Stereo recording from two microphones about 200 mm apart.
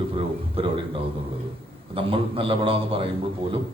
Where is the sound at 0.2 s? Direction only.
25° right (ahead or behind).